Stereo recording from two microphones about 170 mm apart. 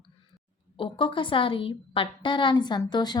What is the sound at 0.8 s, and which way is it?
A woman's voice, 30° left (ahead or behind).